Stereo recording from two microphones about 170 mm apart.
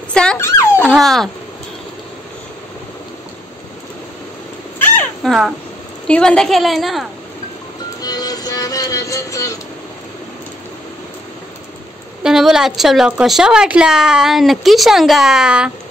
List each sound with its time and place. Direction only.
0.1 s speech: 5° left (ahead or behind)
0.4 s dog: 15° left (ahead or behind)
0.8 s a woman's voice: centre (ahead or behind)
4.7 s a sound: 10° left (ahead or behind)
6.0 s a woman's voice: 5° left (ahead or behind)
8.0 s music: 20° left (ahead or behind)
12.2 s a woman's voice: 5° right (ahead or behind)